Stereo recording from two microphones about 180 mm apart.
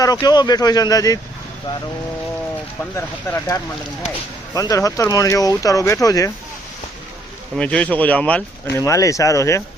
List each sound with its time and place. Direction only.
0.0 s speech: 20° left (ahead or behind)
2.9 s speech: 10° left (ahead or behind)
4.5 s speech: 20° left (ahead or behind)
7.5 s speech: 5° left (ahead or behind)